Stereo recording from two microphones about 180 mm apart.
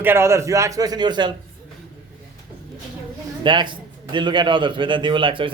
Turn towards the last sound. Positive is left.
turn(degrees=-30)  # may be behind; listen again after turning